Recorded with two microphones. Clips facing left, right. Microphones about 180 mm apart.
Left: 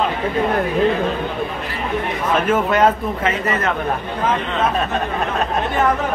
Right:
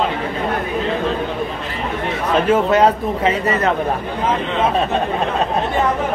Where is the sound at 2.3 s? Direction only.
35° right (ahead or behind).